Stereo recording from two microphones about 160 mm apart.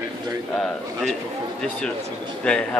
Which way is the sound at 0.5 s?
5° left (ahead or behind).